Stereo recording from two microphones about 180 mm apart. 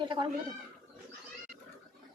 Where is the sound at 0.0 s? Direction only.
25° right (ahead or behind).